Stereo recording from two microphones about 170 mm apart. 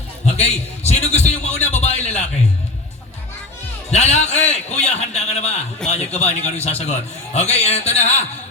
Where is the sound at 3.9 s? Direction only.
40° left (ahead or behind).